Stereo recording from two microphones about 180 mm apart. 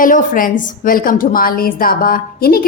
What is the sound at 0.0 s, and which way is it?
A woman's voice, 50° left (ahead or behind).